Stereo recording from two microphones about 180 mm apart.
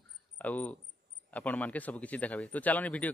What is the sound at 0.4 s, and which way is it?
Speech, 10° left (ahead or behind).